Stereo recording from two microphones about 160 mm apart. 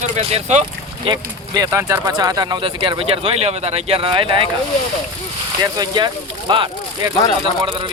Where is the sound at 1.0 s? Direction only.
25° right (ahead or behind).